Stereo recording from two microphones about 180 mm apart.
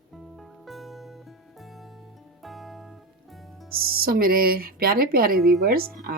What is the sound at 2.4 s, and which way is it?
Music, centre (ahead or behind).